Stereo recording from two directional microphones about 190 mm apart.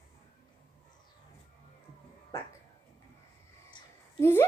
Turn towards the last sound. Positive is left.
turn(degrees=10)  # may be behind; listen again after turning